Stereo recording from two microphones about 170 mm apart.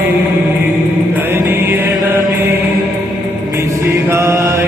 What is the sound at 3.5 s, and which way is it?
Mantra, 15° right (ahead or behind).